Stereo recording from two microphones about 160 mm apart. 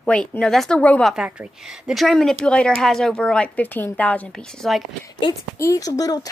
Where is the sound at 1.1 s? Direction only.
5° right (ahead or behind).